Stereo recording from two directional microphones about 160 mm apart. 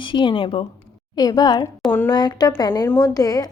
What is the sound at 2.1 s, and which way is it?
A woman's voice, 25° left (ahead or behind).